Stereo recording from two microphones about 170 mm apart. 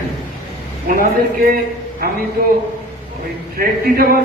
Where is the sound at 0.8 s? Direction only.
55° right (ahead or behind).